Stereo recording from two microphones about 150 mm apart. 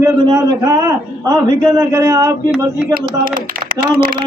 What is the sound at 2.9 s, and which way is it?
Speech, 70° right (ahead or behind).